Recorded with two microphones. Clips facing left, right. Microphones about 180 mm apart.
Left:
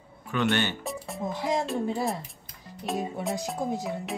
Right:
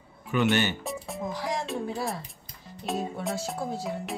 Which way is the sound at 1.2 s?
20° left (ahead or behind).